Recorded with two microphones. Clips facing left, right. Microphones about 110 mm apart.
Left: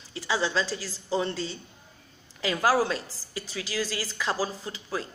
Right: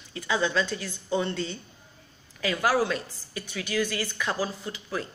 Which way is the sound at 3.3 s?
25° left (ahead or behind).